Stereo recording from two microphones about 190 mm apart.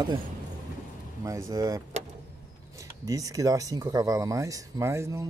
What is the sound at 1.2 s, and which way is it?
Speech, 15° right (ahead or behind).